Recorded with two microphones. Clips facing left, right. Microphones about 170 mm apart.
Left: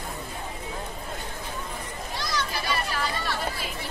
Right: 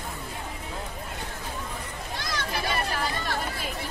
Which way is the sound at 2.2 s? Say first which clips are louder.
Even; 55° right (ahead or behind).